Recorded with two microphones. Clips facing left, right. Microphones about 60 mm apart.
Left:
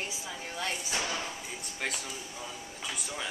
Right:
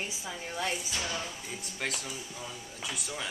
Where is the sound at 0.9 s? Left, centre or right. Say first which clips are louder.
Left 2 dB; left.